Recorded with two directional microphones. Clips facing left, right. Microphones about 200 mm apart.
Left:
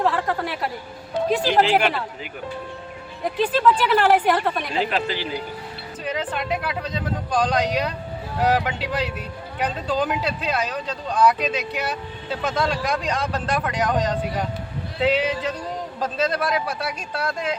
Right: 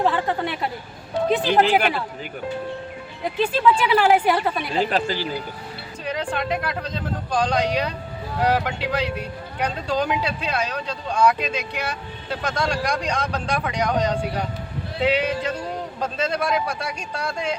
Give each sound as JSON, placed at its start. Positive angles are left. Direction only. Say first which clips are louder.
{"t": 0.0, "sound": "speech", "louder": "right 1 dB", "side_deg": 0}
{"t": 3.3, "sound": "speech", "louder": "even", "side_deg": 0}
{"t": 4.9, "sound": "speech", "louder": "right 2 dB", "side_deg": -40}
{"t": 6.1, "sound": "speech", "louder": "right 1 dB", "side_deg": 5}